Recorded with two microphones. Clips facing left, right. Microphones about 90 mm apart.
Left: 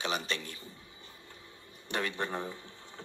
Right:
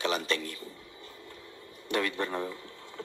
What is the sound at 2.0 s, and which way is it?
Speech, 25° left (ahead or behind).